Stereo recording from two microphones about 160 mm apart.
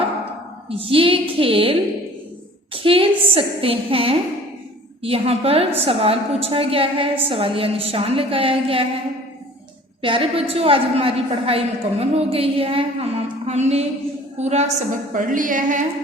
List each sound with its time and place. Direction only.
0.7 s a woman's voice: 35° right (ahead or behind)
10.0 s a woman's voice: 35° right (ahead or behind); by 15.9 s 55° right (ahead or behind)